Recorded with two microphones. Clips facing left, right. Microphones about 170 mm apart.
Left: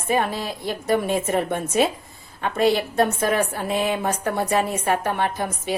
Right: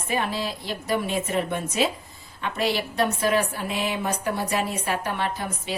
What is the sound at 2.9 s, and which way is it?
A woman's voice, 50° left (ahead or behind).